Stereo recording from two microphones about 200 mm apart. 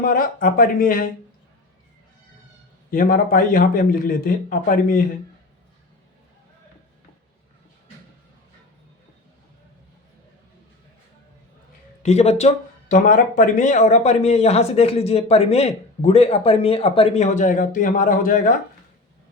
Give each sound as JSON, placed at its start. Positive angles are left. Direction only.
{"t": 0.0, "sound": "speech", "side_deg": 45}
{"t": 2.9, "sound": "speech", "side_deg": 45}
{"t": 12.0, "sound": "speech", "side_deg": 30}